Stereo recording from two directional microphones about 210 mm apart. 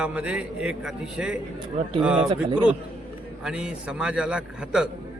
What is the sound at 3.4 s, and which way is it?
A man's voice, 5° right (ahead or behind).